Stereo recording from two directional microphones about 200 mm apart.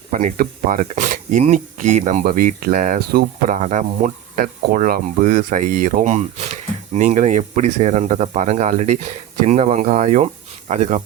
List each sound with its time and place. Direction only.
0.1 s speech: 40° right (ahead or behind)